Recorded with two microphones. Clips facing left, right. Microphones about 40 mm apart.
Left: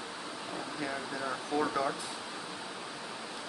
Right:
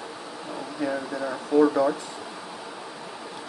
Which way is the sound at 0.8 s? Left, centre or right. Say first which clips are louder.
Right 10 dB; centre.